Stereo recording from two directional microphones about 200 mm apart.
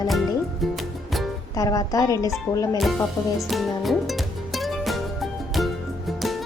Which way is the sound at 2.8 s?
Centre (ahead or behind).